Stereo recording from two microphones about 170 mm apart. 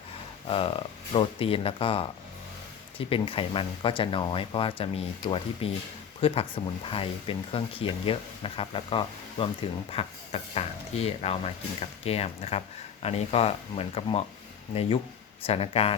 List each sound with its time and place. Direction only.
0.4 s speech: 35° left (ahead or behind)